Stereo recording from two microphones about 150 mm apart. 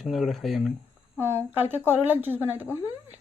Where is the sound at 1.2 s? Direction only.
15° right (ahead or behind).